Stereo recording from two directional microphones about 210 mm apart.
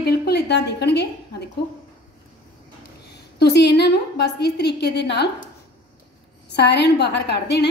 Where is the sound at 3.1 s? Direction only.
50° left (ahead or behind).